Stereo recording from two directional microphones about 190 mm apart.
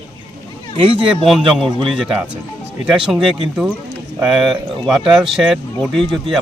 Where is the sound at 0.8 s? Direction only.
5° right (ahead or behind).